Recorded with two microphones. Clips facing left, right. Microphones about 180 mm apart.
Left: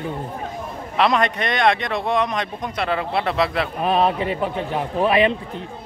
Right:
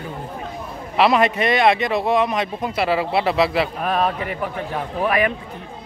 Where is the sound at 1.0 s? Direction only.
5° right (ahead or behind).